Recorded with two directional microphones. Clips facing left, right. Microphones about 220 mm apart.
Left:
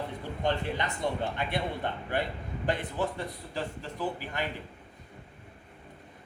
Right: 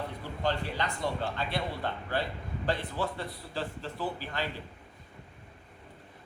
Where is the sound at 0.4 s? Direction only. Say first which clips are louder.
Left 1 dB; 20° left (ahead or behind).